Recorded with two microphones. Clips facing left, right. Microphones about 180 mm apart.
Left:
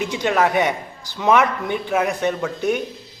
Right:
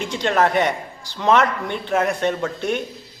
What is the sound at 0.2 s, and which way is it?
A man's voice, 5° left (ahead or behind).